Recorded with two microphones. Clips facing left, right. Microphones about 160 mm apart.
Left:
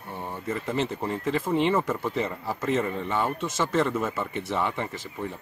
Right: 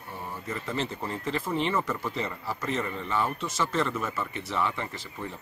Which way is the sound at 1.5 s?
20° left (ahead or behind).